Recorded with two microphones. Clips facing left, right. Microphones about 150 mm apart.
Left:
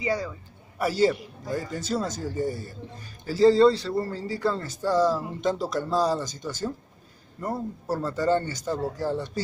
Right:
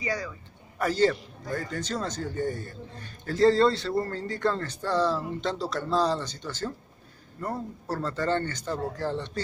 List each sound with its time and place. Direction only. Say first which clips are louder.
0.0 s a man's voice: left 4 dB; 25° left (ahead or behind)
0.7 s a man's voice: left 1 dB; 10° left (ahead or behind)